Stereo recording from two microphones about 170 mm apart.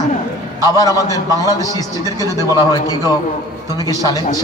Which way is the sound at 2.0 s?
20° right (ahead or behind).